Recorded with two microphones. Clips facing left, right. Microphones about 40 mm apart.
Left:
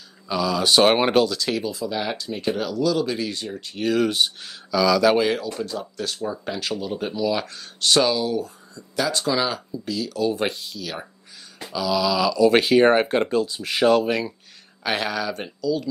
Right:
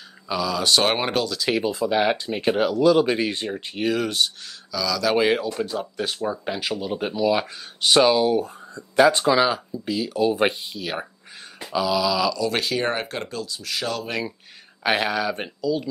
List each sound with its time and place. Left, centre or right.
0.3 s speech: centre
1.5 s speech: right
3.8 s speech: centre
4.2 s speech: centre
5.3 s speech: right
9.4 s speech: centre
11.6 s a sound: centre
12.0 s speech: centre
12.4 s speech: centre
14.8 s speech: centre